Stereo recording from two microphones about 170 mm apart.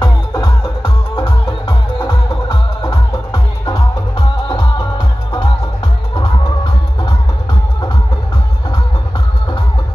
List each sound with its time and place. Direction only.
0.0 s music: 25° left (ahead or behind)
2.8 s music: 20° left (ahead or behind)